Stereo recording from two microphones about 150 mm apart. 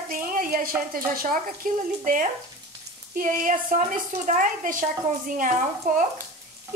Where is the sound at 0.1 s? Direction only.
65° right (ahead or behind).